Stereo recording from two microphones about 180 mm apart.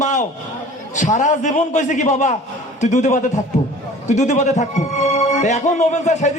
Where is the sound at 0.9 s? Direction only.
40° left (ahead or behind).